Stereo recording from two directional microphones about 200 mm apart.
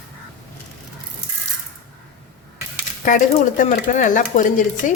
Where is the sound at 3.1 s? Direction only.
40° left (ahead or behind).